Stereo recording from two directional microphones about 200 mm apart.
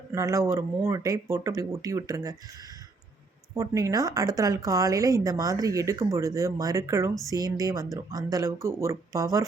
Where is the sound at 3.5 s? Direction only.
15° right (ahead or behind).